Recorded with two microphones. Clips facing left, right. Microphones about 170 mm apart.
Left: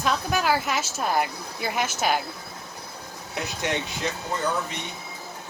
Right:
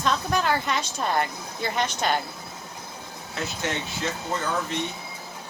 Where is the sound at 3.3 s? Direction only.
15° left (ahead or behind).